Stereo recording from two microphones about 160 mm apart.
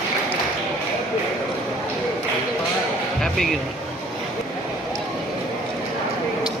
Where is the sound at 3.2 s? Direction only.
Centre (ahead or behind).